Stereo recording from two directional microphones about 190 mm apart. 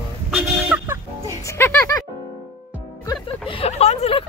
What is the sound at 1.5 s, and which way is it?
Music, 15° left (ahead or behind).